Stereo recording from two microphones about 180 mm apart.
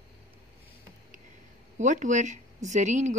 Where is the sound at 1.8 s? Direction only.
45° right (ahead or behind).